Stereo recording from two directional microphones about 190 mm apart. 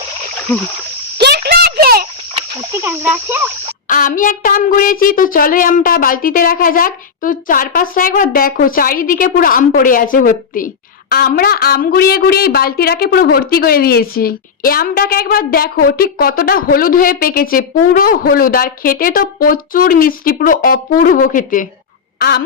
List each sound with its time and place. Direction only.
0.5 s splash: 10° left (ahead or behind)
1.2 s a sound: 60° right (ahead or behind)
2.8 s speech: 10° right (ahead or behind)
3.8 s a woman's voice: 45° left (ahead or behind)
22.2 s fowl: 55° left (ahead or behind)